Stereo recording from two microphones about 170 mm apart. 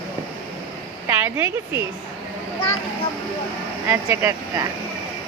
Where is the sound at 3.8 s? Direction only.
15° right (ahead or behind).